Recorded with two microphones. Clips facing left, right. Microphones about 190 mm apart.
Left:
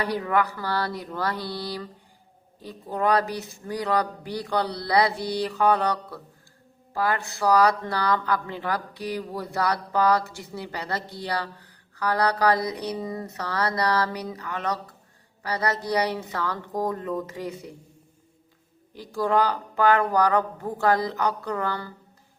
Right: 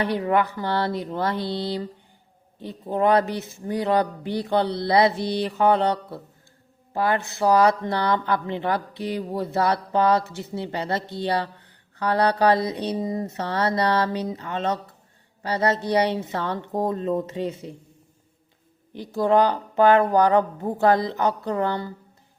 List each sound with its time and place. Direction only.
0.0 s speech: 25° right (ahead or behind)
18.9 s speech: 25° right (ahead or behind)